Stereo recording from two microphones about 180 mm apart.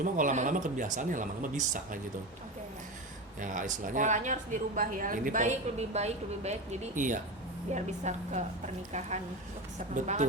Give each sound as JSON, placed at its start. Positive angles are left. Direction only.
{"t": 0.0, "sound": "a woman's voice", "side_deg": -45}
{"t": 3.4, "sound": "a woman's voice", "side_deg": -45}